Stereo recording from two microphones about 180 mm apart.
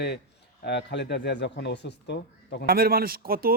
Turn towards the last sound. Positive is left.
turn(degrees=-55)  # may be behind; listen again after turning